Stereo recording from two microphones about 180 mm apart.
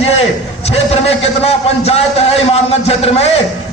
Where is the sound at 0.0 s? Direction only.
35° left (ahead or behind).